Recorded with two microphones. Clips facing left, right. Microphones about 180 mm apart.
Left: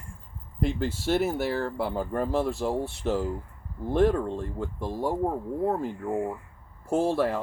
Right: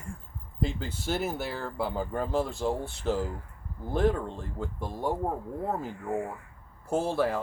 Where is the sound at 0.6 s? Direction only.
Centre (ahead or behind).